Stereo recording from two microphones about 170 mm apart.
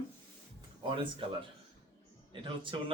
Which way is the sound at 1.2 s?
30° right (ahead or behind).